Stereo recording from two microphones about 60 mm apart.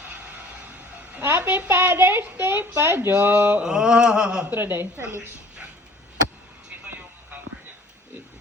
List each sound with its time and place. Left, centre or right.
1.2 s a woman's voice: right
1.5 s a woman's voice: right
3.6 s a sound: centre
4.4 s a woman's voice: right